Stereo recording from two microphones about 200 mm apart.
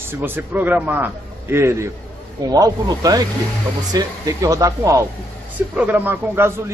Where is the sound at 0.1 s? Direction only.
10° right (ahead or behind).